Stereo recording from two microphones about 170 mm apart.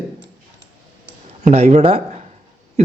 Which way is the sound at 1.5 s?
40° right (ahead or behind).